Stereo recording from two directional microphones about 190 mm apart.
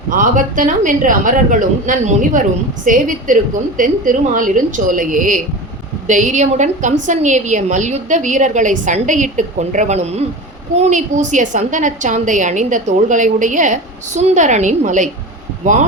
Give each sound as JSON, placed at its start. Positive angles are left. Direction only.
{"t": 0.1, "sound": "a woman's voice", "side_deg": -45}